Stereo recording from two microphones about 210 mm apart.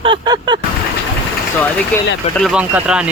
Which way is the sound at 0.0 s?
20° right (ahead or behind).